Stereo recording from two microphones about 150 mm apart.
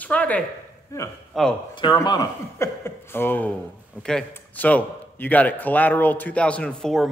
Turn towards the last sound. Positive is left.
turn(degrees=5)  # may be behind; listen again after turning